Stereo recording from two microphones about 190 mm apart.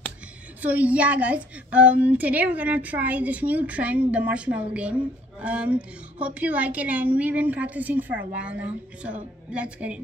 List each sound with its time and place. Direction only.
0.6 s a woman's voice: 10° right (ahead or behind)